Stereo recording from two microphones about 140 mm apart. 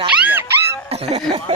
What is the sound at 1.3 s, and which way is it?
Speech, 45° right (ahead or behind).